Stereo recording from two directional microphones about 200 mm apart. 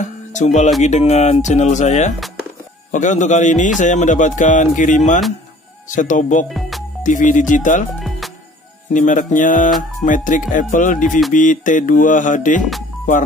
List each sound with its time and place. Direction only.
0.0 s music: 35° left (ahead or behind)
0.8 s speech: 35° left (ahead or behind)
8.9 s speech: 40° left (ahead or behind)